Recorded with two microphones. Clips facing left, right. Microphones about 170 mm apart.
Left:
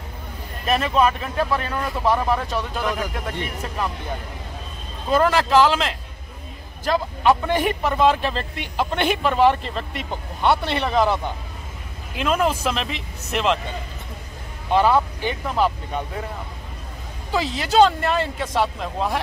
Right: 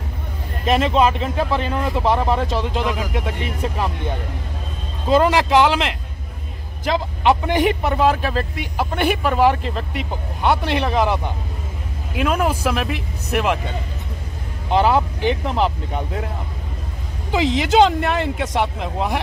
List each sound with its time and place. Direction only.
0.7 s speech: 25° right (ahead or behind)
5.1 s speech: 15° right (ahead or behind)
12.2 s speech: 10° right (ahead or behind)
14.7 s speech: 15° right (ahead or behind)
17.3 s speech: 15° right (ahead or behind)